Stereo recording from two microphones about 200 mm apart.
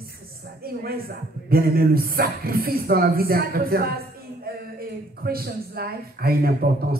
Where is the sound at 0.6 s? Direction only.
50° right (ahead or behind).